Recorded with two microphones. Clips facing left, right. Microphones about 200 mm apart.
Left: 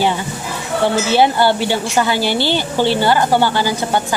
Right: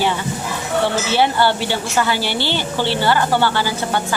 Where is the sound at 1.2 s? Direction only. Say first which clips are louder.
Left 2 dB; 15° left (ahead or behind).